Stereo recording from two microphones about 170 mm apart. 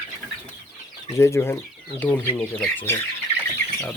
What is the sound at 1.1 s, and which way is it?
Speech, 15° left (ahead or behind).